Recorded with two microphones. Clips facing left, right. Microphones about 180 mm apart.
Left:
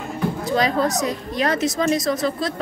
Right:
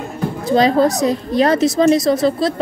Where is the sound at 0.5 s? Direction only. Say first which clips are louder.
Right 8 dB; 30° right (ahead or behind).